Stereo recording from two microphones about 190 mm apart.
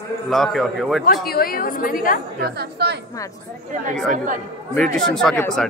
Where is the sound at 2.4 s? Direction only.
60° right (ahead or behind).